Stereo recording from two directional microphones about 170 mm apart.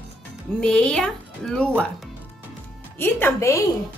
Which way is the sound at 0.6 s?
5° left (ahead or behind).